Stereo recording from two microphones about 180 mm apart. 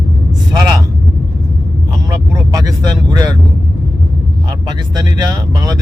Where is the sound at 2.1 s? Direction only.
20° right (ahead or behind).